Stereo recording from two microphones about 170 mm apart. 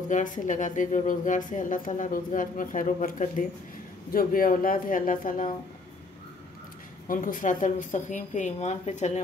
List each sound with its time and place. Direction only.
0.1 s a woman's voice: 45° left (ahead or behind)
7.1 s a woman's voice: 55° left (ahead or behind)